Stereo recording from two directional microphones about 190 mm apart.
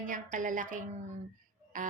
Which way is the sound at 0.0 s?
45° right (ahead or behind).